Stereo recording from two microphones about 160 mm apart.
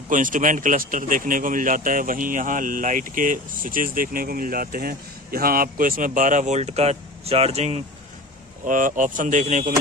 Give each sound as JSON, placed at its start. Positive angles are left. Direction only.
{"t": 0.1, "sound": "speech", "side_deg": -55}
{"t": 8.6, "sound": "speech", "side_deg": -55}